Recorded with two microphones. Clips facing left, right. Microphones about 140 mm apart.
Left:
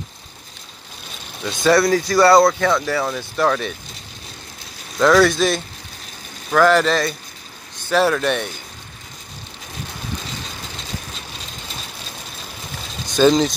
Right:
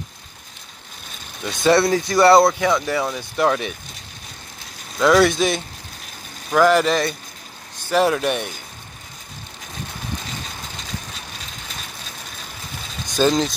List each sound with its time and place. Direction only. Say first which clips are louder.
1.6 s speech: left 1 dB; 25° right (ahead or behind)
5.1 s speech: even; 20° right (ahead or behind)
13.1 s speech: left 4 dB; 5° right (ahead or behind)